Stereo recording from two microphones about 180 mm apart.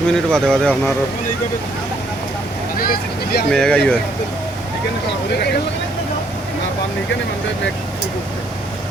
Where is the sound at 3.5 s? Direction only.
5° left (ahead or behind).